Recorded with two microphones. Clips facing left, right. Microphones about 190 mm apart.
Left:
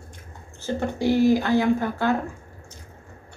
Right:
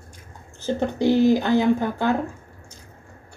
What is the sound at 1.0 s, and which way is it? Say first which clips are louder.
Speech: right 1 dB; 20° right (ahead or behind).